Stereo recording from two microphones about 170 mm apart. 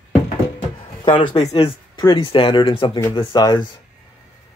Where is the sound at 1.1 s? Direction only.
25° left (ahead or behind).